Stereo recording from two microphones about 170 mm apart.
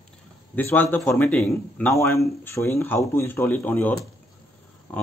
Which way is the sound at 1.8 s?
15° left (ahead or behind).